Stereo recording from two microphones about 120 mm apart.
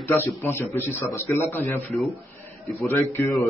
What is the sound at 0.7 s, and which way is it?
Speech, 15° left (ahead or behind).